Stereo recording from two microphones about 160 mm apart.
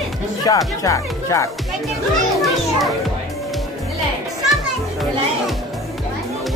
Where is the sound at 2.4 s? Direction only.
Centre (ahead or behind).